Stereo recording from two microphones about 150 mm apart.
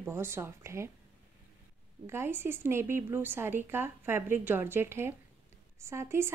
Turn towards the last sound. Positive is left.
turn(degrees=-15)  # may be behind; listen again after turning